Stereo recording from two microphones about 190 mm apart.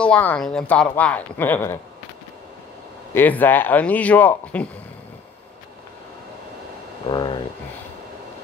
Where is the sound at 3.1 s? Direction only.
10° left (ahead or behind).